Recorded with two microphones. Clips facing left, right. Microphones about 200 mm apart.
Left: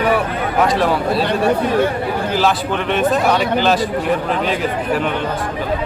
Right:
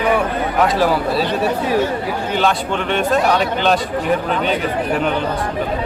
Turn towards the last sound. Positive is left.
turn(degrees=0)  # may be behind; listen again after turning